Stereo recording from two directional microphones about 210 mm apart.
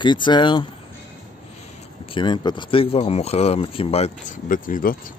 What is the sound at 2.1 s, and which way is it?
Speech, 20° left (ahead or behind).